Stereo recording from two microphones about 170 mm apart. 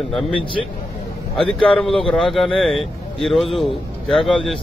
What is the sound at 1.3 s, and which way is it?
A man's voice, 5° left (ahead or behind).